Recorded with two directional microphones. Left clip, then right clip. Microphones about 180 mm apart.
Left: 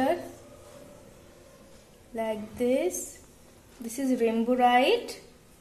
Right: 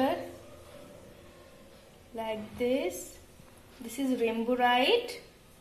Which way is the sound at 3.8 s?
65° left (ahead or behind).